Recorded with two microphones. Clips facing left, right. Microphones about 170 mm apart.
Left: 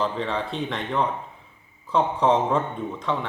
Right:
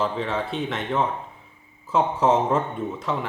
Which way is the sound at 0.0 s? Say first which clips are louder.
Right 1 dB; 5° right (ahead or behind).